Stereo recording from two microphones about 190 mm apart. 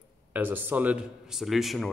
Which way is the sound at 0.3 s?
10° right (ahead or behind).